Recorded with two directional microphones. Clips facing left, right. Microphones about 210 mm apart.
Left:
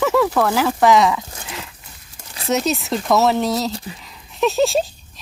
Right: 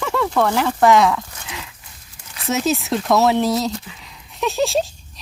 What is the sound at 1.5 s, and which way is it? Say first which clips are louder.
Horse: left 2 dB; centre (ahead or behind).